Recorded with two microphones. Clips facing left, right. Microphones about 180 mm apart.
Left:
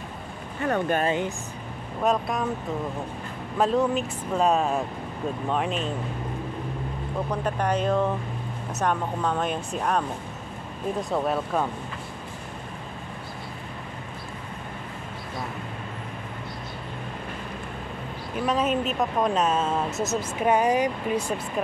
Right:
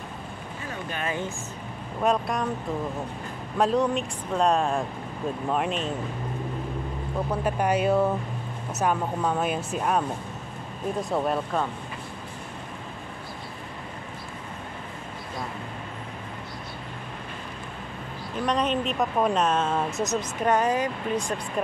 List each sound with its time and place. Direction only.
0.7 s speech: 55° left (ahead or behind)
2.0 s a woman's voice: centre (ahead or behind)
3.5 s a woman's voice: centre (ahead or behind)
7.2 s a woman's voice: 10° right (ahead or behind)
18.4 s a woman's voice: 5° left (ahead or behind)
19.9 s speech: 25° left (ahead or behind)
20.2 s speech: 10° left (ahead or behind)